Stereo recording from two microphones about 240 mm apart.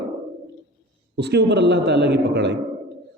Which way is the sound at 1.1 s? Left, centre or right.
Right.